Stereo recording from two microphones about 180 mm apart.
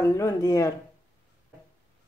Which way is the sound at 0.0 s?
15° left (ahead or behind).